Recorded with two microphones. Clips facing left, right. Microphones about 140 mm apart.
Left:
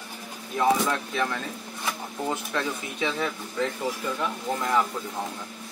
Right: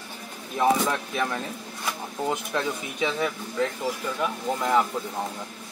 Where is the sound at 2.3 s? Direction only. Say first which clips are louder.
Right 1 dB; 15° right (ahead or behind).